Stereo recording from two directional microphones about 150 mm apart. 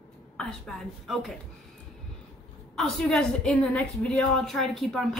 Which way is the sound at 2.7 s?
Centre (ahead or behind).